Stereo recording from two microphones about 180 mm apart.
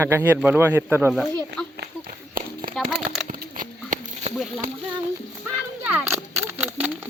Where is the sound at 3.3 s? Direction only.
45° right (ahead or behind).